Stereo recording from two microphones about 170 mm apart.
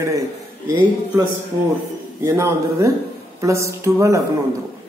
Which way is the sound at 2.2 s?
15° right (ahead or behind).